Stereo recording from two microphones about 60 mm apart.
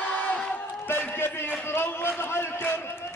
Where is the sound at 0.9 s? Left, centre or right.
Left.